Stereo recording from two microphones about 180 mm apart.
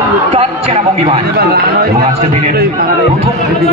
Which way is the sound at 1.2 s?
60° right (ahead or behind).